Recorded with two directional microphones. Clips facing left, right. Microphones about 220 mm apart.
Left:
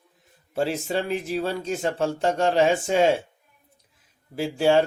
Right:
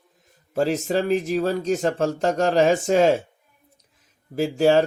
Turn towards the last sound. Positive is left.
turn(degrees=-40)  # may be behind; listen again after turning